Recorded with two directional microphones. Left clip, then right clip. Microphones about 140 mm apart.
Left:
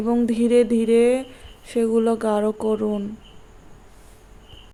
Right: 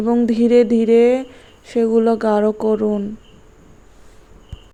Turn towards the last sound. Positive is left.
turn(degrees=-15)  # may be behind; listen again after turning